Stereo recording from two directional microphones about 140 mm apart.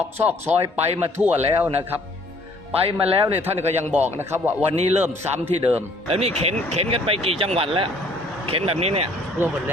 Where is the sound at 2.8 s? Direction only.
40° right (ahead or behind).